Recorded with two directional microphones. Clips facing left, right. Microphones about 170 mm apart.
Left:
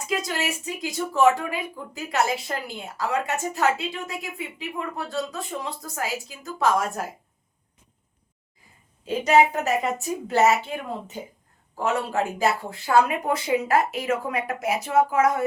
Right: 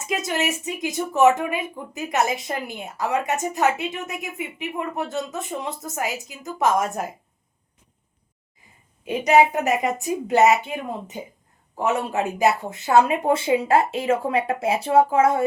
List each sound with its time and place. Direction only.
0.0 s speech: 20° right (ahead or behind)
9.0 s a woman's voice: 15° right (ahead or behind)